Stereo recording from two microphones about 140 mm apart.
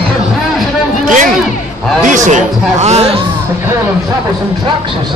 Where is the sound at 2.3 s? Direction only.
60° right (ahead or behind).